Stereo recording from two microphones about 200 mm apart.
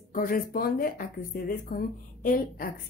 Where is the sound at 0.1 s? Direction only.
45° left (ahead or behind).